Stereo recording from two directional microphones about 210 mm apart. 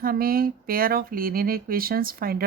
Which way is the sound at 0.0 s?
45° right (ahead or behind).